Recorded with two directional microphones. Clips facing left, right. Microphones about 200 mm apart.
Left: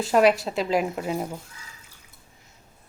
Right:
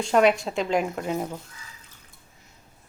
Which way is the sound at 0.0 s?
Centre (ahead or behind).